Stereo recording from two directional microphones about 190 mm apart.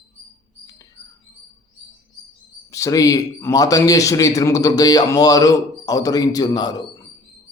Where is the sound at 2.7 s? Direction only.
15° left (ahead or behind).